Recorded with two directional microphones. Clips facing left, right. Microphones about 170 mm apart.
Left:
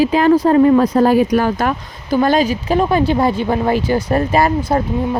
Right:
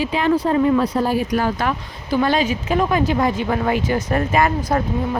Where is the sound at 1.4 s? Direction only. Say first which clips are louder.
Left 4 dB; 45° left (ahead or behind).